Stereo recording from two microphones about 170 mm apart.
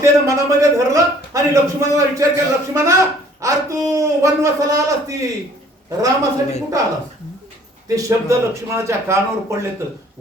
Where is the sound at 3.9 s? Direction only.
20° right (ahead or behind).